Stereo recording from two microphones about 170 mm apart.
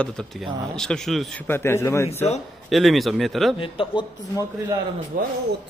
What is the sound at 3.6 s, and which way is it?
Speech, 30° left (ahead or behind).